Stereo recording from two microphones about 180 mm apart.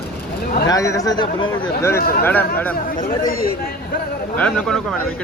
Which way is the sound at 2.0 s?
55° left (ahead or behind).